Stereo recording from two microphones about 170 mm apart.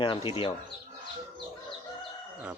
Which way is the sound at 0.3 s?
30° left (ahead or behind).